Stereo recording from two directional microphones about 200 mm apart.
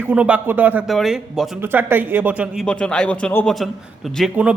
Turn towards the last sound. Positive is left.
turn(degrees=-5)  # may be behind; listen again after turning